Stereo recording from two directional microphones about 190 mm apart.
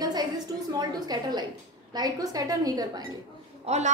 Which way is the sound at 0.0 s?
20° right (ahead or behind).